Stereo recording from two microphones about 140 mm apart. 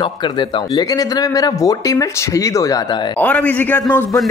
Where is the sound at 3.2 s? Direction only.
10° left (ahead or behind).